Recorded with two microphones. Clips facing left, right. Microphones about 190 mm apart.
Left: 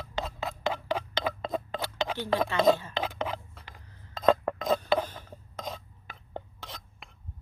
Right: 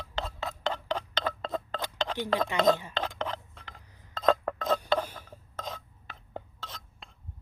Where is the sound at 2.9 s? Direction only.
10° left (ahead or behind).